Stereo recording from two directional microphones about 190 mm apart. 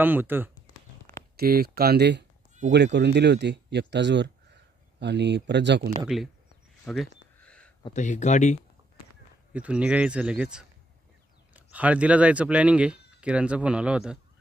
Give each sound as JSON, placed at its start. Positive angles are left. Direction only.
{"t": 0.0, "sound": "speech", "side_deg": -10}
{"t": 1.3, "sound": "speech", "side_deg": -50}
{"t": 6.9, "sound": "a sound", "side_deg": 5}
{"t": 7.9, "sound": "speech", "side_deg": 40}
{"t": 9.5, "sound": "speech", "side_deg": -5}